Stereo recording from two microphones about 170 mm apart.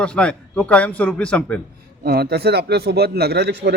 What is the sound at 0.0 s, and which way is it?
A man's voice, 5° left (ahead or behind).